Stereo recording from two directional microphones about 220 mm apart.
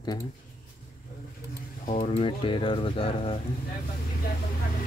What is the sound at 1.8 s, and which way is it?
Speech, 30° left (ahead or behind).